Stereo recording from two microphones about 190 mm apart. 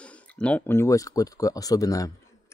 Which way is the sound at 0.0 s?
5° left (ahead or behind).